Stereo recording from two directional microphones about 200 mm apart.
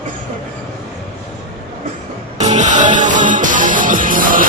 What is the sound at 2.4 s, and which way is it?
Music, 35° right (ahead or behind).